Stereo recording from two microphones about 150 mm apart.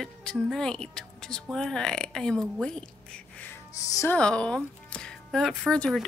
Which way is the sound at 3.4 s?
20° left (ahead or behind).